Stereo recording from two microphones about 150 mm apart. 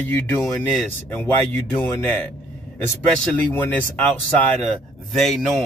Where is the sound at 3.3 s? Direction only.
10° left (ahead or behind).